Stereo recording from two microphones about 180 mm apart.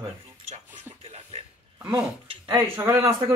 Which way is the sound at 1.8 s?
15° right (ahead or behind).